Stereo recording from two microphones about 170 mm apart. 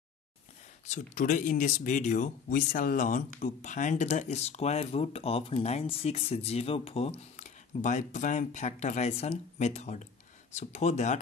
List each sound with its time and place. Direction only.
0.8 s speech: 45° left (ahead or behind)